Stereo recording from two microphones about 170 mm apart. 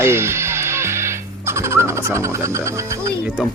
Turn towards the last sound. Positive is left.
turn(degrees=-15)  # may be behind; listen again after turning